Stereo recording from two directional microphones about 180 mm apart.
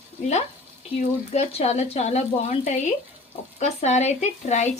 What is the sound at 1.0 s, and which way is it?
Speech, 40° left (ahead or behind).